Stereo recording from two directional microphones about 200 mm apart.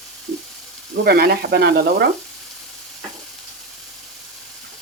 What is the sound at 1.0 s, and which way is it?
Frying, 50° right (ahead or behind).